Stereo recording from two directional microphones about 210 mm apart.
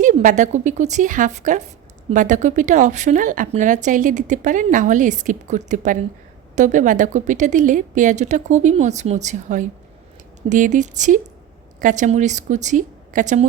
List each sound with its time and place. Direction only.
0.0 s speech: 40° right (ahead or behind)